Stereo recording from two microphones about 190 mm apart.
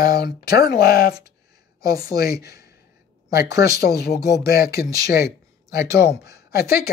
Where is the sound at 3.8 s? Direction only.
60° left (ahead or behind).